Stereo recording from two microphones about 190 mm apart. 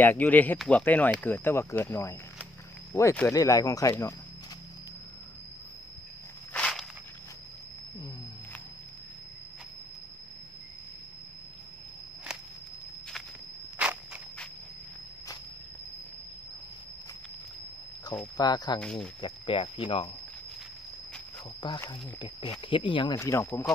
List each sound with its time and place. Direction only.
0.0 s speech: 10° left (ahead or behind)
6.5 s walk: 5° left (ahead or behind)
13.7 s a sound: 5° right (ahead or behind)
18.2 s speech: 20° left (ahead or behind)
18.8 s speech: 5° left (ahead or behind)
19.2 s speech: 25° left (ahead or behind)
21.6 s speech: 20° left (ahead or behind)
23.1 s speech: 15° left (ahead or behind)